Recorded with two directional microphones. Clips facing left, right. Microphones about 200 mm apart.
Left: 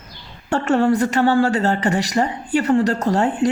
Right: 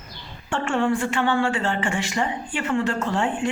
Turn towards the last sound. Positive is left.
turn(degrees=40)  # may be behind; listen again after turning